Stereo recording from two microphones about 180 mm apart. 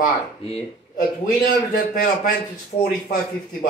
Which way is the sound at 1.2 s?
45° left (ahead or behind).